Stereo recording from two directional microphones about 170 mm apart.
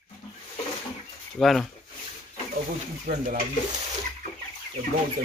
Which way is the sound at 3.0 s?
50° right (ahead or behind).